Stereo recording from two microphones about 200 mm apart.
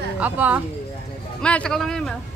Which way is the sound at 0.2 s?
10° right (ahead or behind).